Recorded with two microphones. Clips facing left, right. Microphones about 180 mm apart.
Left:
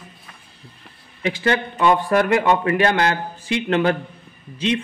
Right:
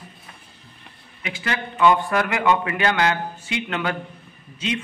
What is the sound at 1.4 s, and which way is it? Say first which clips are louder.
A man's voice: even; 35° left (ahead or behind).